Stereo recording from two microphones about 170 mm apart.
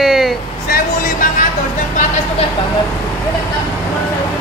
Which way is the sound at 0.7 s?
60° left (ahead or behind).